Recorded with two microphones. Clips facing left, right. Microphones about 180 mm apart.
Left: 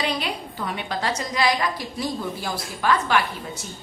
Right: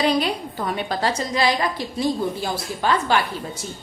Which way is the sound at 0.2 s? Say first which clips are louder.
Right 5 dB; 40° right (ahead or behind).